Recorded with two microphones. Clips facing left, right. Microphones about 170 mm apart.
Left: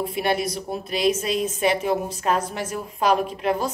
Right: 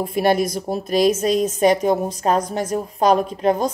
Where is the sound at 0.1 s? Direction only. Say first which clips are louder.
Right 6 dB; 45° right (ahead or behind).